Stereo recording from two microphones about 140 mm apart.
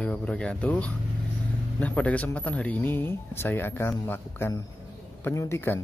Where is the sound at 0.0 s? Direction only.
10° left (ahead or behind).